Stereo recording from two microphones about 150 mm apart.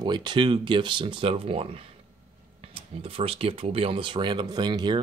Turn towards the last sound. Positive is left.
turn(degrees=-30)  # may be behind; listen again after turning